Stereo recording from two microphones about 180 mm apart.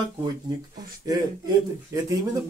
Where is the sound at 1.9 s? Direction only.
15° right (ahead or behind).